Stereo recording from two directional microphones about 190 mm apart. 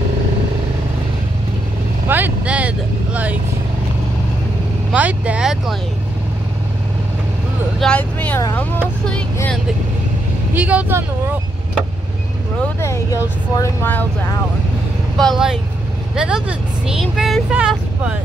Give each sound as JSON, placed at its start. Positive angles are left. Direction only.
{"t": 2.0, "sound": "vehicle", "side_deg": -10}
{"t": 4.9, "sound": "speech", "side_deg": -5}
{"t": 7.8, "sound": "speech", "side_deg": 5}
{"t": 10.5, "sound": "speech", "side_deg": -5}
{"t": 12.8, "sound": "speech", "side_deg": 15}
{"t": 15.1, "sound": "speech", "side_deg": 0}